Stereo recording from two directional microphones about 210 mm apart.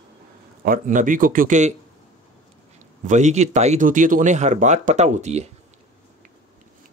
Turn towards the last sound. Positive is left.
turn(degrees=-30)  # may be behind; listen again after turning